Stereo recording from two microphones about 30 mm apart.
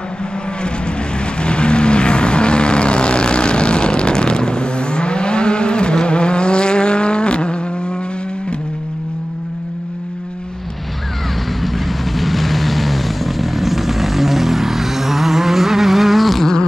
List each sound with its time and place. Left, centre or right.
1.4 s vehicle: left
11.6 s vehicle: centre